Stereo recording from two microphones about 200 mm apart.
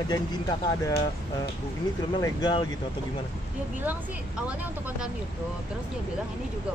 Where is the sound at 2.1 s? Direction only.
20° left (ahead or behind).